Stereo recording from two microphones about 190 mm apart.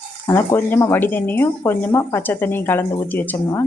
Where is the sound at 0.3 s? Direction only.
10° left (ahead or behind).